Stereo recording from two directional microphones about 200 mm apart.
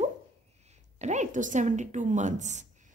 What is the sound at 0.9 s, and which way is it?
A woman's voice, 35° right (ahead or behind).